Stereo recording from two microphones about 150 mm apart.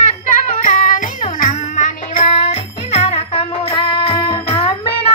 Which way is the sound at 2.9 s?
45° left (ahead or behind).